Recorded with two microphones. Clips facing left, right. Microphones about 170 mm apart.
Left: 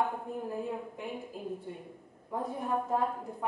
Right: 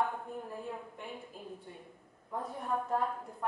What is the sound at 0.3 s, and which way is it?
A woman's voice, centre (ahead or behind).